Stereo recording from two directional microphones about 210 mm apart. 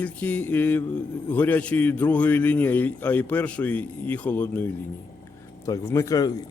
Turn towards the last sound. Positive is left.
turn(degrees=15)  # may be behind; listen again after turning